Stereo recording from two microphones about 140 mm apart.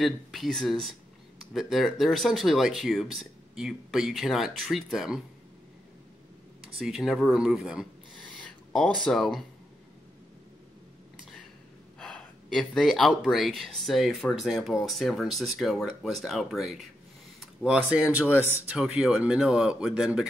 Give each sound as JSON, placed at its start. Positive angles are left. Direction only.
{"t": 0.0, "sound": "speech", "side_deg": 0}
{"t": 6.8, "sound": "speech", "side_deg": -5}
{"t": 8.2, "sound": "a sound", "side_deg": 10}
{"t": 12.0, "sound": "speech", "side_deg": 5}
{"t": 18.8, "sound": "speech", "side_deg": -5}